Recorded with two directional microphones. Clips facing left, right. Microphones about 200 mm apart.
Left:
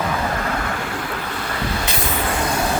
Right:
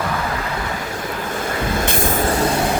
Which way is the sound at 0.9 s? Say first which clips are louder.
Right 1 dB; 45° right (ahead or behind).